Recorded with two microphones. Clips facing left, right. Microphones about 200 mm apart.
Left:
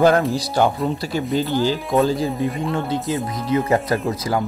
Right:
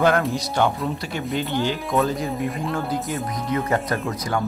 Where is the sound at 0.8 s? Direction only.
35° left (ahead or behind).